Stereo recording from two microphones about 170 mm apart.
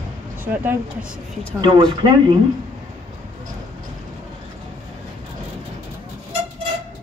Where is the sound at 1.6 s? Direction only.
25° right (ahead or behind).